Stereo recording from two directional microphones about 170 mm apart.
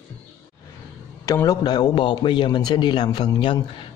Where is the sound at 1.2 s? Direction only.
20° left (ahead or behind).